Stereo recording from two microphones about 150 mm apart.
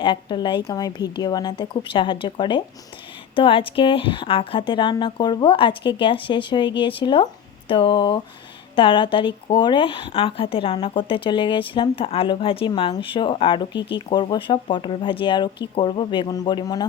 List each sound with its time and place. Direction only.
0.0 s a woman's voice: 30° left (ahead or behind)